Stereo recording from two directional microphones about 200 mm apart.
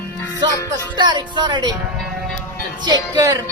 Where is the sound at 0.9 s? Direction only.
20° right (ahead or behind).